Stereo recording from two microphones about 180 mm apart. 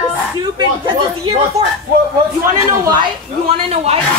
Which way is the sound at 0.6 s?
25° right (ahead or behind).